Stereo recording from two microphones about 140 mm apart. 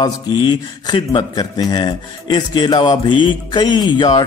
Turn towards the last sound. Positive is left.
turn(degrees=30)  # may be behind; listen again after turning